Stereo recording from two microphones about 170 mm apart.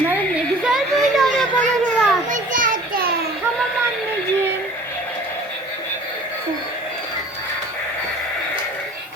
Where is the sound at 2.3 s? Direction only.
50° right (ahead or behind).